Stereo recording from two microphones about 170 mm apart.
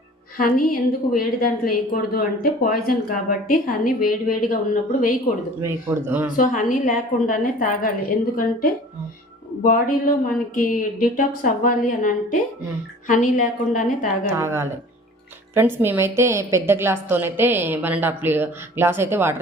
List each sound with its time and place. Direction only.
0.3 s a woman's voice: 55° left (ahead or behind)
5.6 s a woman's voice: 10° right (ahead or behind)
6.3 s speech: 50° left (ahead or behind)
9.6 s speech: 55° left (ahead or behind)
14.3 s a woman's voice: 15° right (ahead or behind)